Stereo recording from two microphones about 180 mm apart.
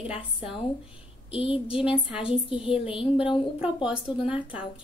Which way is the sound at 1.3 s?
30° left (ahead or behind).